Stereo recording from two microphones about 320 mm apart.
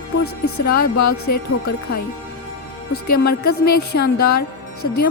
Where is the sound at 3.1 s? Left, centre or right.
Left.